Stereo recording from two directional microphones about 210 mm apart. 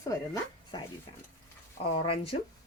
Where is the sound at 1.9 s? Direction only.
25° left (ahead or behind).